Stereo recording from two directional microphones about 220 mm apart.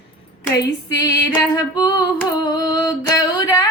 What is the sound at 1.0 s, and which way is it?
Female singing, 15° left (ahead or behind).